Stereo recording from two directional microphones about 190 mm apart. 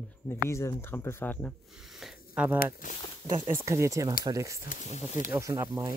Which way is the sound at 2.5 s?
50° left (ahead or behind).